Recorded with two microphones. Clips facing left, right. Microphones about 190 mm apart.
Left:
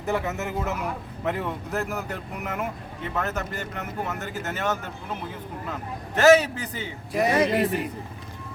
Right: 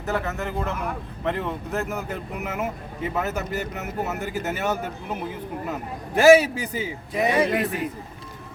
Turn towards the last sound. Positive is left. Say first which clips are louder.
# even
turn(degrees=0)  # may be behind; listen again after turning